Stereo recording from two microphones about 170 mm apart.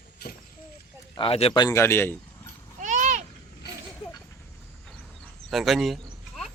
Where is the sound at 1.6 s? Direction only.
15° left (ahead or behind).